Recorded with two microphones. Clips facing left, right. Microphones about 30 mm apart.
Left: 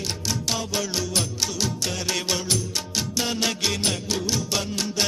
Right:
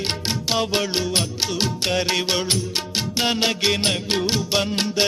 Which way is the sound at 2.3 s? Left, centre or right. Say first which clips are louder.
Right 4 dB; right.